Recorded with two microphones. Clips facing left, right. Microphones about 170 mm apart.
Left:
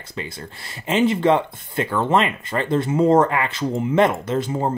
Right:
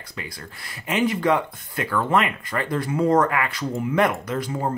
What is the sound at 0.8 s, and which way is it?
Speech, 25° left (ahead or behind).